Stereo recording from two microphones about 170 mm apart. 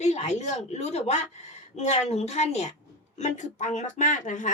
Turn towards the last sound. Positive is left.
turn(degrees=50)  # may be behind; listen again after turning